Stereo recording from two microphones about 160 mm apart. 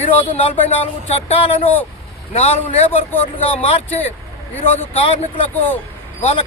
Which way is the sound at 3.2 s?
40° left (ahead or behind).